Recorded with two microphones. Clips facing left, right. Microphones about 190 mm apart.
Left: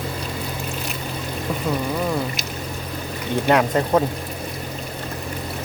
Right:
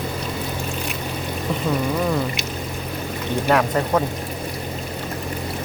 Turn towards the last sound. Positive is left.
turn(degrees=20)  # may be behind; listen again after turning